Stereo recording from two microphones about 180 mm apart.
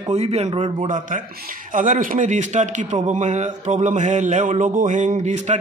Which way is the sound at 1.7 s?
45° right (ahead or behind).